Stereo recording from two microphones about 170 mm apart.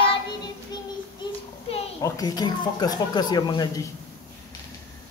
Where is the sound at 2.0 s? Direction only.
20° left (ahead or behind).